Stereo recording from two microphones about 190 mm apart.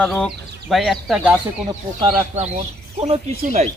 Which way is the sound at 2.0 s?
30° right (ahead or behind).